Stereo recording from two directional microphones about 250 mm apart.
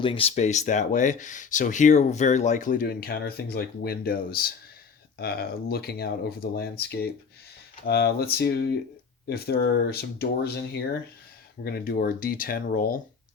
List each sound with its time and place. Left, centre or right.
0.0 s speech: left